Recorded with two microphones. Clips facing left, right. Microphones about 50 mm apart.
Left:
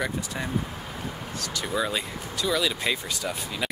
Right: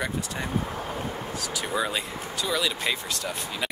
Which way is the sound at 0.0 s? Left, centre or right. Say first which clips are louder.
Even; centre.